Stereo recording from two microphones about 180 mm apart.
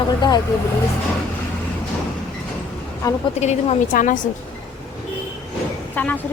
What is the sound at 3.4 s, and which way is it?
Speech, 40° left (ahead or behind).